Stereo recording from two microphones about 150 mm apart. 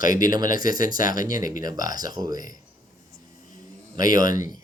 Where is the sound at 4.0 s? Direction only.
65° left (ahead or behind).